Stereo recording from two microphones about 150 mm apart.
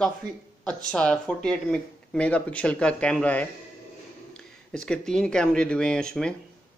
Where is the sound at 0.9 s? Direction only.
5° left (ahead or behind).